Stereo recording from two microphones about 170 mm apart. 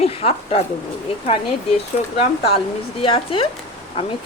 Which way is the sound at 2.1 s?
35° left (ahead or behind).